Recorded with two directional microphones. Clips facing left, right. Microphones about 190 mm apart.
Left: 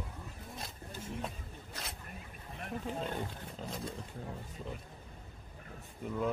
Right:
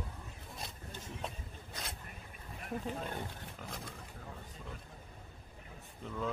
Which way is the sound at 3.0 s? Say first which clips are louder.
Left 3 dB; 25° left (ahead or behind).